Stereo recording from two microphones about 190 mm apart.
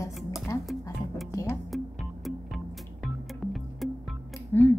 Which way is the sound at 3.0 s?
Centre (ahead or behind).